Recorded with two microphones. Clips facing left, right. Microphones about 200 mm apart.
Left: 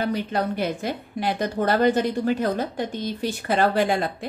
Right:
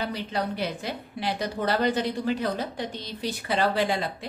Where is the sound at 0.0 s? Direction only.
50° left (ahead or behind).